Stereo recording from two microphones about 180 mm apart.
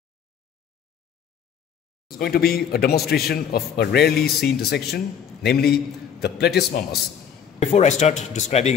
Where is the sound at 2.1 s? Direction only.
60° left (ahead or behind).